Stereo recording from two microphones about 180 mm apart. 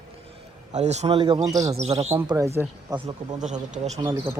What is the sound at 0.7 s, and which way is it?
A man's voice, 40° right (ahead or behind).